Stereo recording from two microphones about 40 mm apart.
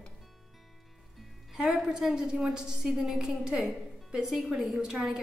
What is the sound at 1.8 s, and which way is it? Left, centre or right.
A woman's voice, centre.